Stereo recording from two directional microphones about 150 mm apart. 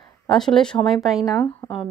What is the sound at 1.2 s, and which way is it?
Speech, 25° left (ahead or behind).